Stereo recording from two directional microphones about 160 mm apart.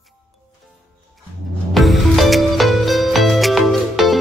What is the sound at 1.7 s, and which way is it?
Music, centre (ahead or behind).